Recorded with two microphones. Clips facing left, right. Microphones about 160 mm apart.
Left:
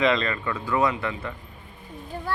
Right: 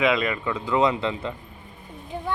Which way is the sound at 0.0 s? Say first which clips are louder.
Right 1 dB; 10° right (ahead or behind).